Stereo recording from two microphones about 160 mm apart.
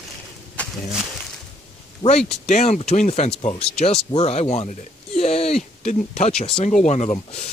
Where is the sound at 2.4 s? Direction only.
45° left (ahead or behind).